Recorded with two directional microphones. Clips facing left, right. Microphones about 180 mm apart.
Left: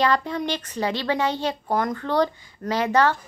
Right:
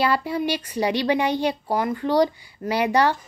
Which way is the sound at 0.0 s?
10° right (ahead or behind).